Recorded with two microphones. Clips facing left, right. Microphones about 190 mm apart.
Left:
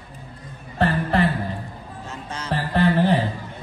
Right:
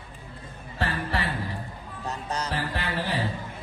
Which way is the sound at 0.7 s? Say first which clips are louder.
Left 9 dB; 60° left (ahead or behind).